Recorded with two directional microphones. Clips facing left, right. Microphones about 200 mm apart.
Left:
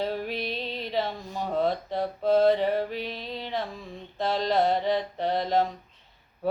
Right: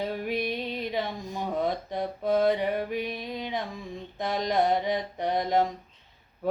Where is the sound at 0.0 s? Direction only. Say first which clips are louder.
Even; 15° right (ahead or behind).